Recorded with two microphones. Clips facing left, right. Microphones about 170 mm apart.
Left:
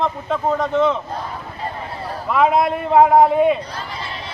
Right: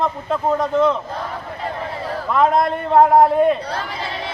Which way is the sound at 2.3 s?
5° left (ahead or behind).